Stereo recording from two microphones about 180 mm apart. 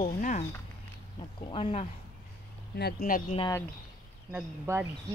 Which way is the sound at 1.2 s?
30° left (ahead or behind).